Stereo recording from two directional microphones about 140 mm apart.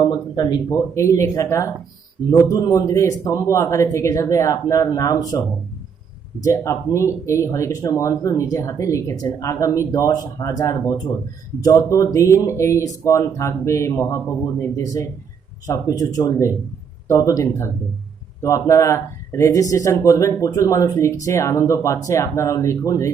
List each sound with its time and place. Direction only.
0.0 s speech: 30° left (ahead or behind)
6.4 s speech: 20° left (ahead or behind)